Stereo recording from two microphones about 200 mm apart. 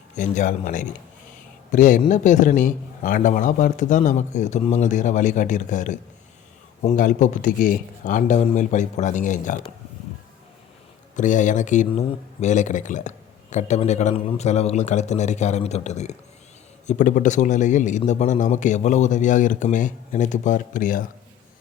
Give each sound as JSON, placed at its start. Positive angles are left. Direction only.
{"t": 0.2, "sound": "speech", "side_deg": 40}
{"t": 11.2, "sound": "speech", "side_deg": 40}